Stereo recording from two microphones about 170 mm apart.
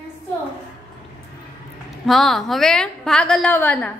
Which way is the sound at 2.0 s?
Centre (ahead or behind).